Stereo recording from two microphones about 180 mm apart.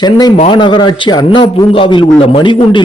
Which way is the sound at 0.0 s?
25° left (ahead or behind).